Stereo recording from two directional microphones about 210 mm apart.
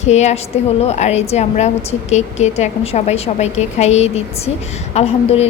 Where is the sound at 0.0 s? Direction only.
30° left (ahead or behind).